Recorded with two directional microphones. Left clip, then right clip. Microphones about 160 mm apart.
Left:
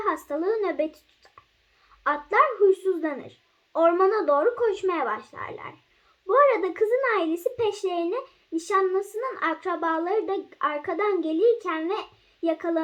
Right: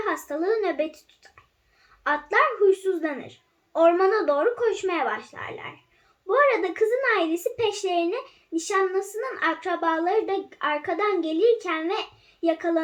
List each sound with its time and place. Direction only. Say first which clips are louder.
0.0 s speech: even; 25° left (ahead or behind)
2.6 s a child's voice: even; 25° left (ahead or behind)